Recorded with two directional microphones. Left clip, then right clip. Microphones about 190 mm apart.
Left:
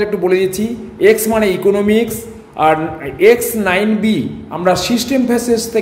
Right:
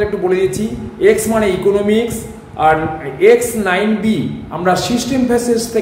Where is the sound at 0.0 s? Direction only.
45° left (ahead or behind).